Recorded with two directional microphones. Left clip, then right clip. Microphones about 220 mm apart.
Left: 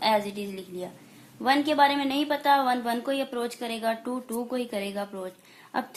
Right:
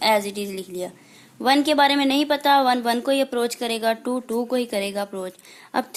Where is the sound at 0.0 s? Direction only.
50° right (ahead or behind).